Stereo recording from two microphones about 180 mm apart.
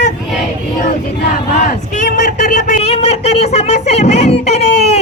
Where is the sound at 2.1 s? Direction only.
45° left (ahead or behind).